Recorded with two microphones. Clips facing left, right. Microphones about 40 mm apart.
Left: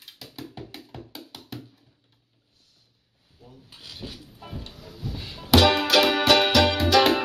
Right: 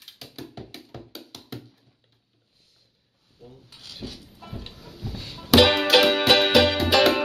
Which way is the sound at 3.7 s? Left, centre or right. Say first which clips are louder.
Left 4 dB; centre.